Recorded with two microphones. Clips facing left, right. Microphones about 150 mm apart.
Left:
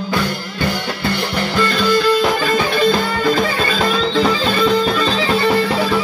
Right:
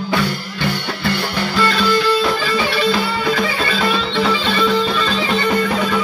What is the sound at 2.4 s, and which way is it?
Music, 50° left (ahead or behind).